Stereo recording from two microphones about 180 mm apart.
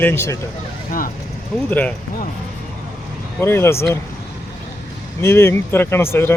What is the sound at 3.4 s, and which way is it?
Speech, 15° left (ahead or behind).